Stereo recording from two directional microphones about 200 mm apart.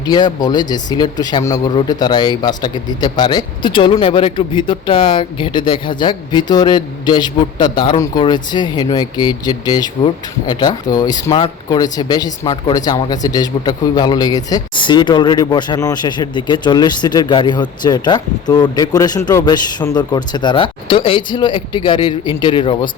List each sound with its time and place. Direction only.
0.0 s speech: 20° left (ahead or behind)